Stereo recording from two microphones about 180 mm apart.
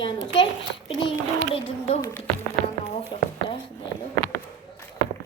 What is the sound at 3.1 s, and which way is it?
Speech, 30° left (ahead or behind).